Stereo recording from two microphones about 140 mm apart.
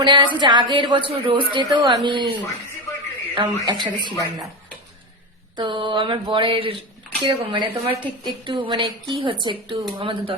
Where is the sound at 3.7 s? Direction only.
35° right (ahead or behind).